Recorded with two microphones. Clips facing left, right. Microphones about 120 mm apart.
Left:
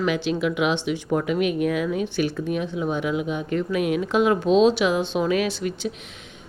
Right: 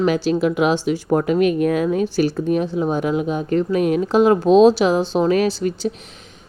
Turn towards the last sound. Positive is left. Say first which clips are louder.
# right 5 dB
turn(degrees=-35)  # may be behind; listen again after turning